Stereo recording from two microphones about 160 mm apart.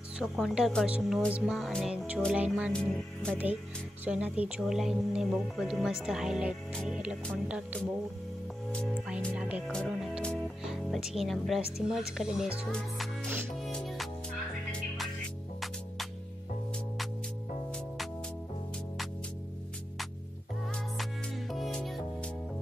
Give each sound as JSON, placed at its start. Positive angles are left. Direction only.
{"t": 0.2, "sound": "speech", "side_deg": 0}
{"t": 2.7, "sound": "speech", "side_deg": 5}
{"t": 4.0, "sound": "speech", "side_deg": -10}
{"t": 6.7, "sound": "music", "side_deg": 5}
{"t": 7.4, "sound": "speech", "side_deg": -10}
{"t": 9.3, "sound": "speech", "side_deg": -10}
{"t": 9.7, "sound": "music", "side_deg": 0}
{"t": 10.6, "sound": "speech", "side_deg": -5}
{"t": 12.7, "sound": "music", "side_deg": 0}
{"t": 21.0, "sound": "music", "side_deg": 0}